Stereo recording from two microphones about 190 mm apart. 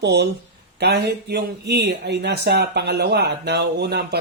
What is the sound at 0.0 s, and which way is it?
Speech, 60° right (ahead or behind).